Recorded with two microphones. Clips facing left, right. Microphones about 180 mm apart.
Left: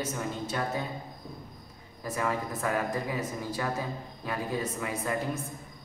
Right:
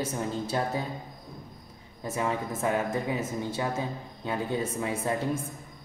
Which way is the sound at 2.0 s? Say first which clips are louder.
Right 1 dB; 25° right (ahead or behind).